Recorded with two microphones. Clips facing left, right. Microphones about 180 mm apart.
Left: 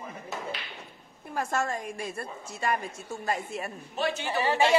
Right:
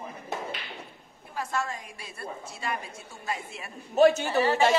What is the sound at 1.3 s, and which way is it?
A woman's voice, 45° left (ahead or behind).